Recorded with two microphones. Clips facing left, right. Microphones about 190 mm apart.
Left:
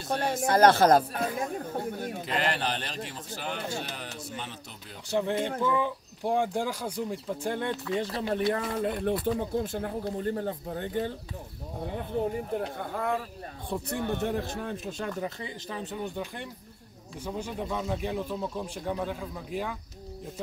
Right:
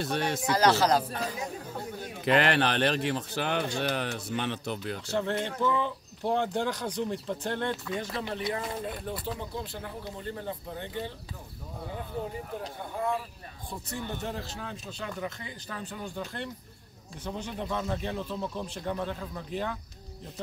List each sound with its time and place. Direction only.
0.0 s a man's voice: 70° right (ahead or behind)
0.4 s speech: 55° left (ahead or behind)
2.2 s a man's voice: 70° right (ahead or behind)
5.0 s speech: 15° left (ahead or behind)
8.0 s speech: 35° left (ahead or behind)
8.5 s speech: 55° left (ahead or behind)
12.5 s speech: 55° left (ahead or behind)
15.2 s speech: 25° left (ahead or behind); by 19.8 s 10° left (ahead or behind)